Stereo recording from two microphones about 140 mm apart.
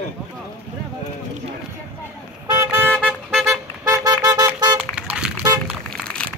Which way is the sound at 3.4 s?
25° right (ahead or behind).